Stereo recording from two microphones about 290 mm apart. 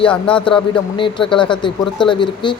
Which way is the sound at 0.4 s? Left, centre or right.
Centre.